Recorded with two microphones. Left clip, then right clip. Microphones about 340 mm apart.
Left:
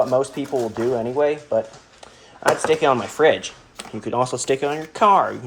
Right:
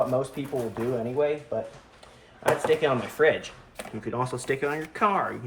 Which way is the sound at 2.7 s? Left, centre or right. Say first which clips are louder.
Left 6 dB; centre.